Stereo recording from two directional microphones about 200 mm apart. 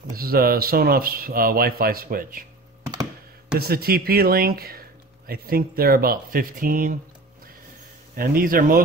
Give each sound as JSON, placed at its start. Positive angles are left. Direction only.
{"t": 0.1, "sound": "speech", "side_deg": -50}
{"t": 3.5, "sound": "speech", "side_deg": -50}
{"t": 8.2, "sound": "speech", "side_deg": -45}